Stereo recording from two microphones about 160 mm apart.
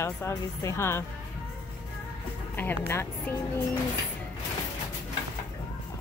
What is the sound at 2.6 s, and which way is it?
Speech, 15° left (ahead or behind).